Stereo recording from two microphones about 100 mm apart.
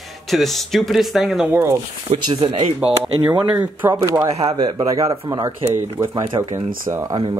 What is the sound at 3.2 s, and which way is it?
Speech, 45° right (ahead or behind).